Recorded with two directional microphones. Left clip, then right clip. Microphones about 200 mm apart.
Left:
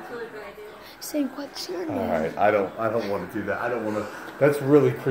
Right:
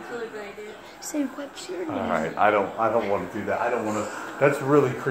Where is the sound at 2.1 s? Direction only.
35° left (ahead or behind).